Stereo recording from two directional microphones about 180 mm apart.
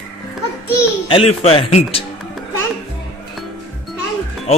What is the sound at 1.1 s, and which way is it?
Speech, 30° left (ahead or behind).